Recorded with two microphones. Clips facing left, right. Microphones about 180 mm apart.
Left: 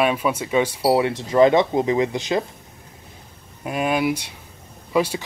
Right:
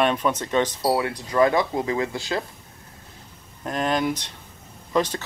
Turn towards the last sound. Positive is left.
turn(degrees=10)  # may be behind; listen again after turning